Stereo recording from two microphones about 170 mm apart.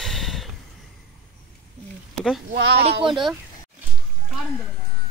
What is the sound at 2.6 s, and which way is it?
Speech, 75° right (ahead or behind).